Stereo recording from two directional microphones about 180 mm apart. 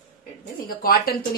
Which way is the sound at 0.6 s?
55° left (ahead or behind).